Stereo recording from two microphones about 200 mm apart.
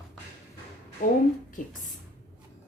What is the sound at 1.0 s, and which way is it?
Speech, 40° left (ahead or behind).